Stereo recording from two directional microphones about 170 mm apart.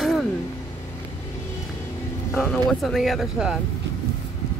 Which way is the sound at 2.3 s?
5° left (ahead or behind).